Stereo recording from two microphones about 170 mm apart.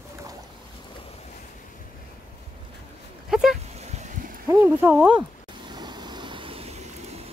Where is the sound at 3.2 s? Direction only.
Centre (ahead or behind).